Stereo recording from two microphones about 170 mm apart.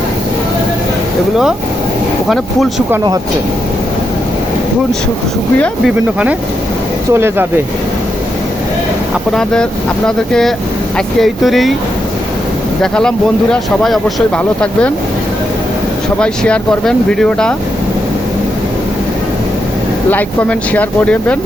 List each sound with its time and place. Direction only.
2.3 s speech: centre (ahead or behind)
5.5 s speech: 5° left (ahead or behind)
7.1 s speech: 15° right (ahead or behind)
9.3 s speech: 5° left (ahead or behind)
10.9 s speech: centre (ahead or behind)
12.8 s speech: 5° left (ahead or behind)
16.2 s speech: 5° left (ahead or behind)
20.1 s speech: 10° left (ahead or behind)